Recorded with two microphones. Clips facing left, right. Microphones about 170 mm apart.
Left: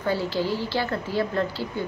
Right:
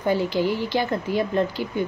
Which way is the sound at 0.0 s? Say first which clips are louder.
Right 3 dB; 15° right (ahead or behind).